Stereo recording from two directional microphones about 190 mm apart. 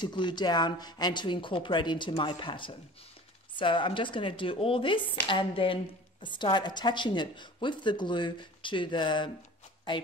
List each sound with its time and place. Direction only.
0.0 s a woman's voice: 25° left (ahead or behind)